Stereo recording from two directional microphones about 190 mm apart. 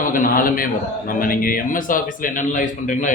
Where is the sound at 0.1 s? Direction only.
45° left (ahead or behind).